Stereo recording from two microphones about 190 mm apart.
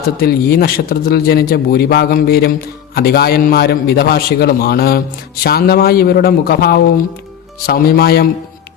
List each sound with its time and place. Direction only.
0.2 s a man's voice: 55° left (ahead or behind)